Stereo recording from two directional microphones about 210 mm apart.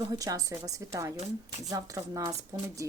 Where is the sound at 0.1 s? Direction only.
15° right (ahead or behind).